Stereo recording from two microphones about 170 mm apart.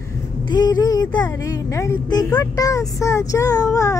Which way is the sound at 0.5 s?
20° left (ahead or behind).